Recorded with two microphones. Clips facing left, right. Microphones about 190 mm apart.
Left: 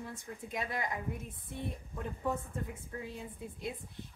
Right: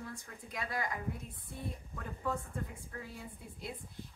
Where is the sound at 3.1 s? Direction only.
20° left (ahead or behind).